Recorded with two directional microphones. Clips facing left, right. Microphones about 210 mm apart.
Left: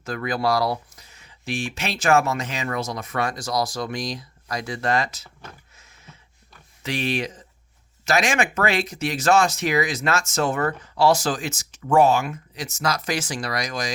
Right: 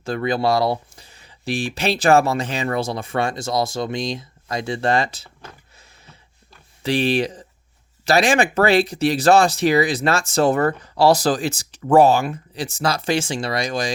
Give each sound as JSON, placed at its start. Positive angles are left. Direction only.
{"t": 0.0, "sound": "speech", "side_deg": -30}
{"t": 5.7, "sound": "a sound", "side_deg": -35}
{"t": 6.8, "sound": "speech", "side_deg": -30}